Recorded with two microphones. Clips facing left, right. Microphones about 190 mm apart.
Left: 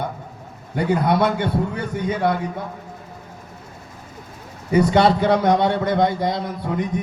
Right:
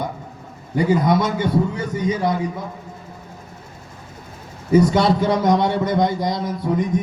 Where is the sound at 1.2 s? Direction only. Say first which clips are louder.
Even; 60° left (ahead or behind).